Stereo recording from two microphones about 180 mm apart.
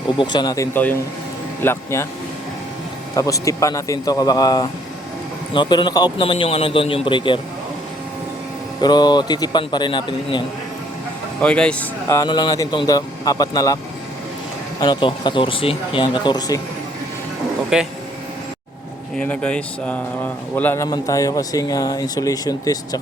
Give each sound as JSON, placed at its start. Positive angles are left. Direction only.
{"t": 0.2, "sound": "speech", "side_deg": 25}
{"t": 3.2, "sound": "speech", "side_deg": 20}
{"t": 8.8, "sound": "speech", "side_deg": 25}
{"t": 11.3, "sound": "speech", "side_deg": 5}
{"t": 14.8, "sound": "speech", "side_deg": 25}
{"t": 17.7, "sound": "speech", "side_deg": -5}
{"t": 19.1, "sound": "speech", "side_deg": 5}